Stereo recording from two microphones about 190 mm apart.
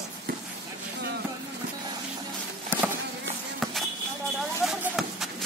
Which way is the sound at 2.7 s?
10° right (ahead or behind).